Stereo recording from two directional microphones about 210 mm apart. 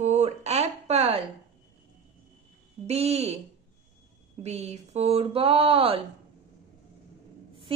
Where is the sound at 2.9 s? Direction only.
30° right (ahead or behind).